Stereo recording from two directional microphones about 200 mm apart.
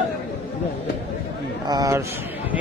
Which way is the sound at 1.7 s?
15° right (ahead or behind).